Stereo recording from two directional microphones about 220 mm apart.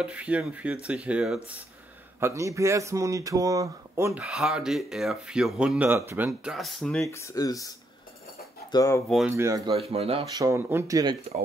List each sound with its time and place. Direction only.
0.0 s speech: 5° right (ahead or behind)
7.1 s speech: 15° left (ahead or behind)
8.7 s speech: 15° left (ahead or behind)
9.7 s speech: 25° right (ahead or behind)
10.3 s speech: 15° right (ahead or behind)